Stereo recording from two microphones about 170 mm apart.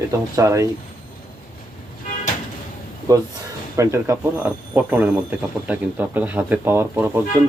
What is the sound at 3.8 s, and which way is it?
Speech, 15° right (ahead or behind).